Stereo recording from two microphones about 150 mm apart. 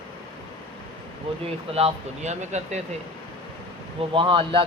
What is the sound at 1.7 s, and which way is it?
Speech, 45° right (ahead or behind).